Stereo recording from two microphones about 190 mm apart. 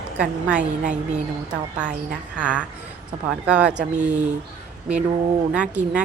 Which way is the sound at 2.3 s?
5° right (ahead or behind).